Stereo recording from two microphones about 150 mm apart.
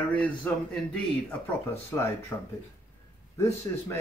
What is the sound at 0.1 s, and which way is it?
Speech, 10° left (ahead or behind).